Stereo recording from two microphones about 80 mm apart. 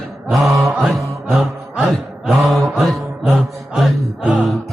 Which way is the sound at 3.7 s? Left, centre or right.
Centre.